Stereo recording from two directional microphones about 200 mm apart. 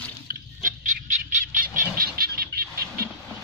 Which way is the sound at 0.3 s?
40° right (ahead or behind).